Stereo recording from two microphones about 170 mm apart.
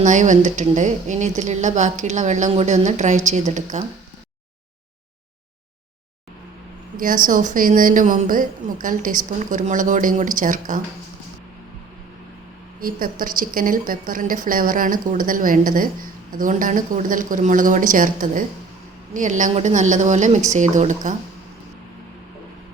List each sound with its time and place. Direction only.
0.0 s a woman's voice: 45° right (ahead or behind)
6.9 s a woman's voice: 55° right (ahead or behind)
12.8 s a woman's voice: 55° right (ahead or behind)